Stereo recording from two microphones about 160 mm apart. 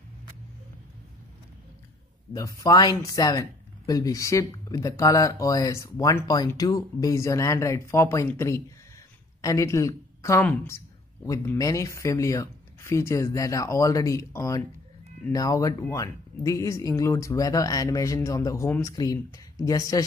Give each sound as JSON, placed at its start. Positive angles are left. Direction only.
{"t": 2.3, "sound": "a woman's voice", "side_deg": 20}